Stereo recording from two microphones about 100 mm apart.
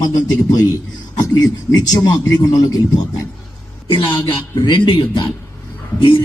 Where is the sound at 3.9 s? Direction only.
60° left (ahead or behind).